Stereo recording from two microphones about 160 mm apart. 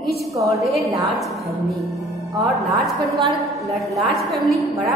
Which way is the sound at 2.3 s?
Centre (ahead or behind).